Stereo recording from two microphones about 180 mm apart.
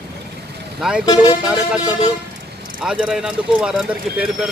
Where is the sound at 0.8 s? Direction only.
5° right (ahead or behind).